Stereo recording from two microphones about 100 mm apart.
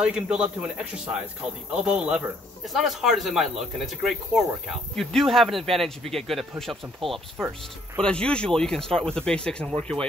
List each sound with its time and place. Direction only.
0.0 s a man's voice: 10° right (ahead or behind)
7.3 s speech: 25° right (ahead or behind)
8.0 s speech: 10° left (ahead or behind)